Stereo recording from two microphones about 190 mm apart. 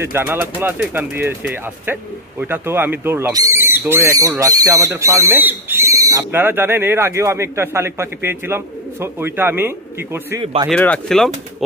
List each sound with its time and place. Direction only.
0.0 s speech: 10° right (ahead or behind)
10.4 s speech: 30° right (ahead or behind)
10.7 s speech: 5° left (ahead or behind)